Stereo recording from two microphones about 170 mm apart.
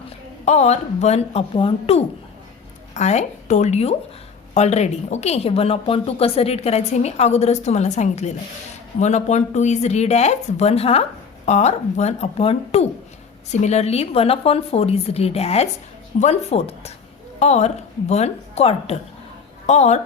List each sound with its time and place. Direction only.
0.4 s speech: 40° left (ahead or behind)